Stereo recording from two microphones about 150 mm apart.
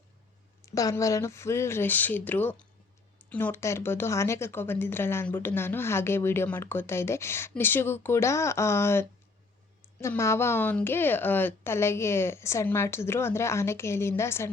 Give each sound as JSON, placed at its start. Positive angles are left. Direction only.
{"t": 0.6, "sound": "speech", "side_deg": 20}